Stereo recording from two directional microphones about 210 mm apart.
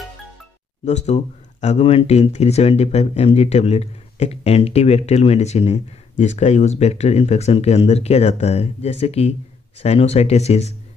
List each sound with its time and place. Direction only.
0.8 s speech: 35° left (ahead or behind)